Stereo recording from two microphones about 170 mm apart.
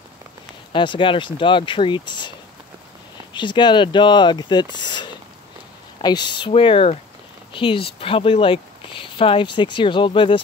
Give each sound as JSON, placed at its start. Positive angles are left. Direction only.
{"t": 0.7, "sound": "speech", "side_deg": 30}
{"t": 3.3, "sound": "speech", "side_deg": 25}